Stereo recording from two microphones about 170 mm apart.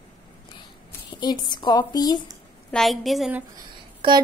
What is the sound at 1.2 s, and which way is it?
A woman's voice, 25° left (ahead or behind).